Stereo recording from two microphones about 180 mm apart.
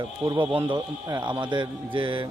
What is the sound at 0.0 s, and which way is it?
Speech, 25° right (ahead or behind).